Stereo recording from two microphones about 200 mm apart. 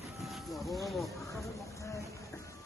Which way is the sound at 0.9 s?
Centre (ahead or behind).